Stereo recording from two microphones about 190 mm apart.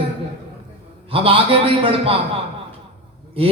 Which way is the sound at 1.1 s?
30° right (ahead or behind).